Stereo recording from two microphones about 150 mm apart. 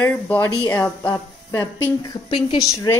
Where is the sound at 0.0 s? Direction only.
10° left (ahead or behind).